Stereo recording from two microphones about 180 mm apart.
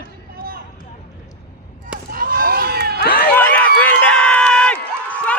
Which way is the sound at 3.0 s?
60° left (ahead or behind).